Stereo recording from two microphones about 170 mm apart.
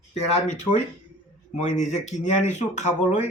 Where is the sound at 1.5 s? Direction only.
45° left (ahead or behind).